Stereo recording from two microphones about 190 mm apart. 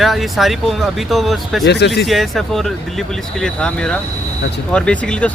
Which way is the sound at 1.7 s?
65° left (ahead or behind).